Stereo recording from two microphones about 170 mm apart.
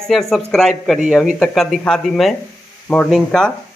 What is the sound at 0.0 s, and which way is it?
Speech, centre (ahead or behind).